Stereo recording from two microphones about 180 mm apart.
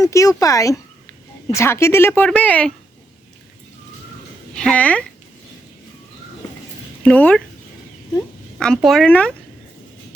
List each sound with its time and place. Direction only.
0.0 s speech: 20° left (ahead or behind)
4.5 s speech: 5° left (ahead or behind)
7.0 s speech: 5° left (ahead or behind)
8.5 s speech: 5° left (ahead or behind)